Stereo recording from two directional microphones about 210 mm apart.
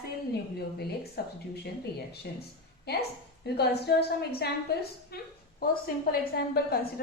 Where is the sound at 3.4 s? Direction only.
50° left (ahead or behind).